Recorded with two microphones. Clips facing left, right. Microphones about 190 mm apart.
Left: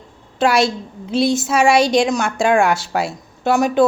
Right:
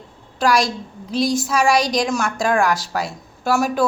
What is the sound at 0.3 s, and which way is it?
A woman's voice, 25° left (ahead or behind).